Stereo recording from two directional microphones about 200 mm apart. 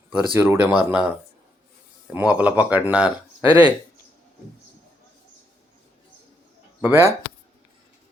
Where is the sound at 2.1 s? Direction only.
5° right (ahead or behind).